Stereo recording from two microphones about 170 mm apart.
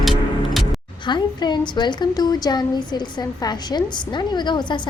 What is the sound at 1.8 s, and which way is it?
A woman's voice, 25° left (ahead or behind).